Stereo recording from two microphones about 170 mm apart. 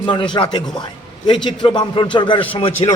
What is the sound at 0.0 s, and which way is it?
A man's voice, 30° left (ahead or behind).